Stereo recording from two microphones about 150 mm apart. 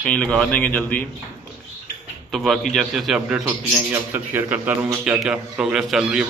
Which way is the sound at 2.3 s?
Centre (ahead or behind).